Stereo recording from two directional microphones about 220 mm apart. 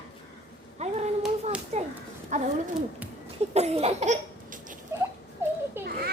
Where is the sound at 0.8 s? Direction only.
30° right (ahead or behind).